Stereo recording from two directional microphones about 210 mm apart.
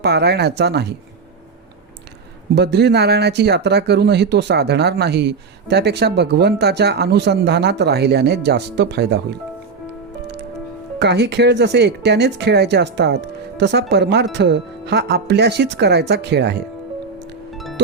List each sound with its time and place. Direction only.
0.0 s speech: 50° right (ahead or behind)
2.6 s speech: 50° right (ahead or behind)
11.0 s speech: 55° right (ahead or behind)
17.5 s music: centre (ahead or behind)